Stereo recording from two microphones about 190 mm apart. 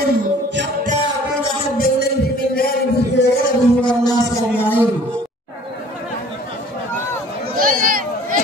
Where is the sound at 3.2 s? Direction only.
65° left (ahead or behind).